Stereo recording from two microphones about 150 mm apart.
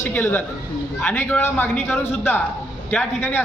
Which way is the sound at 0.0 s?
15° left (ahead or behind).